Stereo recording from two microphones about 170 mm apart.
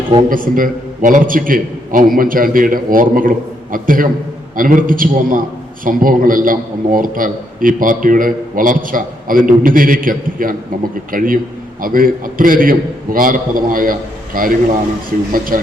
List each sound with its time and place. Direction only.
0.3 s a man's voice: 55° right (ahead or behind)